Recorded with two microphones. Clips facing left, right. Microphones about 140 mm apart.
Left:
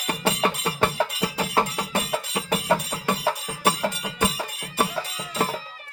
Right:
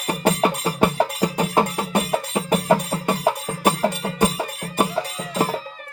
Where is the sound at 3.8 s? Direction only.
40° right (ahead or behind).